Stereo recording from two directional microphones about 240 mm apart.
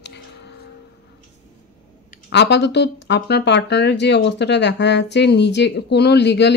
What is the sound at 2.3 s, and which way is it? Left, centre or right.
Speech, left.